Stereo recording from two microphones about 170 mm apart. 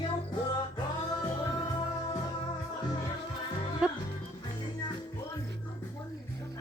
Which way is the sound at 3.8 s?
5° right (ahead or behind).